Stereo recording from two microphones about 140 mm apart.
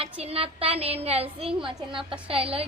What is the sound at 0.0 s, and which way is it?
A woman's voice, 45° right (ahead or behind).